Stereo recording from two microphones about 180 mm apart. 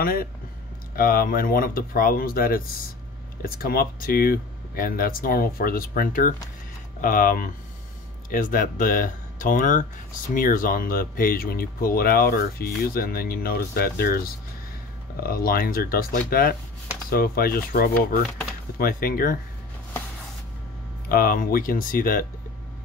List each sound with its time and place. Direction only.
0.0 s speech: 55° left (ahead or behind)
21.1 s speech: 55° left (ahead or behind)